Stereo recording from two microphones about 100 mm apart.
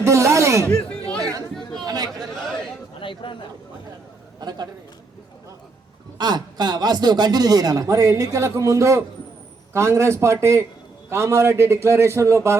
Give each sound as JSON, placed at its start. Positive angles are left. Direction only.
{"t": 0.0, "sound": "a sound", "side_deg": -30}
{"t": 1.2, "sound": "chatter", "side_deg": -35}
{"t": 2.0, "sound": "chatter", "side_deg": 5}
{"t": 3.0, "sound": "a sound", "side_deg": 60}
{"t": 4.4, "sound": "a man's voice", "side_deg": -45}
{"t": 6.1, "sound": "a man's voice", "side_deg": -45}